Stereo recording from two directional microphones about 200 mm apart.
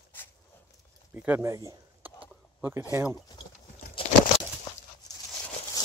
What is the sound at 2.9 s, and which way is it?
Speech, 15° right (ahead or behind).